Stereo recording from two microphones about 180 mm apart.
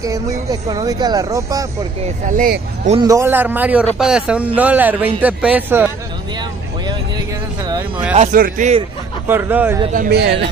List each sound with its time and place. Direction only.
0.0 s speech: 20° right (ahead or behind)
2.2 s speech: 45° right (ahead or behind)
3.1 s a man's voice: 15° right (ahead or behind)
8.1 s a man's voice: 40° right (ahead or behind)
9.3 s a man's voice: 10° right (ahead or behind)
9.9 s speech: 60° right (ahead or behind)